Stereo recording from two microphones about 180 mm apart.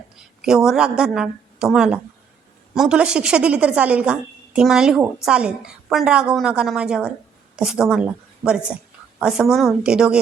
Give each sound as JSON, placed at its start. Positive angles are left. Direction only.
{"t": 0.2, "sound": "a woman's voice", "side_deg": -5}